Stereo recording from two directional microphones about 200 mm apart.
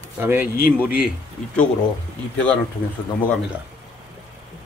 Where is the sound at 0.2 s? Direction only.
10° right (ahead or behind).